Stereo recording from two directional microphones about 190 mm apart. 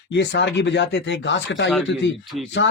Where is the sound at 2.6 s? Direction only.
80° left.